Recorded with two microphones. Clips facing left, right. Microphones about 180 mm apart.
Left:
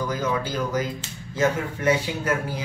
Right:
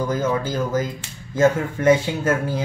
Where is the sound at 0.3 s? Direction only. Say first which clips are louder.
Right 3 dB; 45° right (ahead or behind).